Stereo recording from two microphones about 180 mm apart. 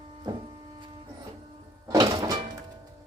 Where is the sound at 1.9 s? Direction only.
20° right (ahead or behind).